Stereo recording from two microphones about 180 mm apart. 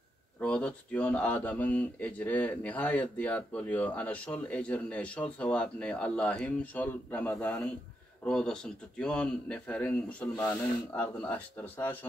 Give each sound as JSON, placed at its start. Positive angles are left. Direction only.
{"t": 0.4, "sound": "a man's voice", "side_deg": 5}
{"t": 10.4, "sound": "speech", "side_deg": 20}
{"t": 10.9, "sound": "speech", "side_deg": 10}